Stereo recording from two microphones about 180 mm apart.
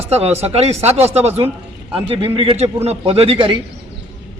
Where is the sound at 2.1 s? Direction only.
30° right (ahead or behind).